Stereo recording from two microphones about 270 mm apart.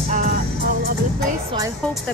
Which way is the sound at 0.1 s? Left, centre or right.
Right.